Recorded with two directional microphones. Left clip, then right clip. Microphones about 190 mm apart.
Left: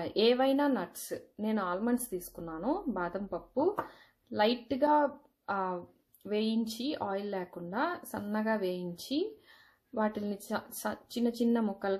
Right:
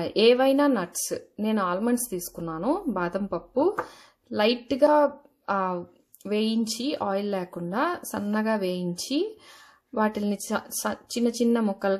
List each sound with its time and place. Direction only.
0.0 s a woman's voice: 35° right (ahead or behind)